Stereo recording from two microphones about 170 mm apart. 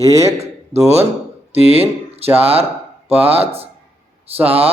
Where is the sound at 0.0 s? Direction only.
20° right (ahead or behind).